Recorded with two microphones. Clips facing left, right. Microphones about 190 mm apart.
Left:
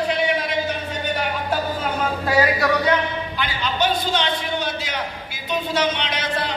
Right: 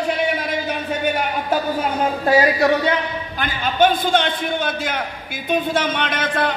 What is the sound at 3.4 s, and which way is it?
A man's voice, 50° right (ahead or behind).